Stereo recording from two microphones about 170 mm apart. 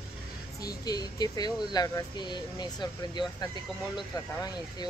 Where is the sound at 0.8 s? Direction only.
20° left (ahead or behind).